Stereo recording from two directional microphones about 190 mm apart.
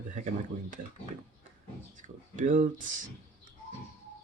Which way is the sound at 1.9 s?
40° right (ahead or behind).